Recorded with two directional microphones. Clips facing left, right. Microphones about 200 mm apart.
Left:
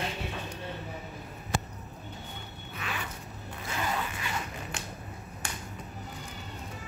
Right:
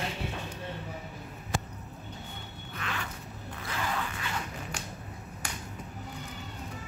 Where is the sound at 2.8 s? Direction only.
5° left (ahead or behind).